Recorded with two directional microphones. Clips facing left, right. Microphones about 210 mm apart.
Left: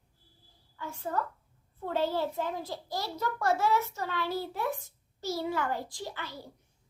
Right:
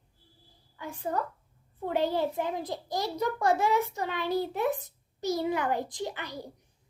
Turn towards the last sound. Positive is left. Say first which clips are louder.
# right 4 dB
turn(degrees=-15)  # may be behind; listen again after turning